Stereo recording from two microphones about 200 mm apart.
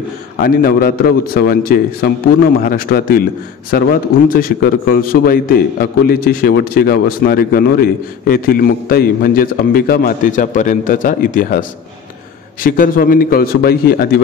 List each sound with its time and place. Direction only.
0.4 s a man's voice: 45° left (ahead or behind)
4.3 s a man's voice: 45° left (ahead or behind)
12.6 s a man's voice: 45° left (ahead or behind)